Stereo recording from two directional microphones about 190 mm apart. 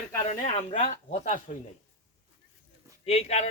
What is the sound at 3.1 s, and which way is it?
Speech, 35° left (ahead or behind).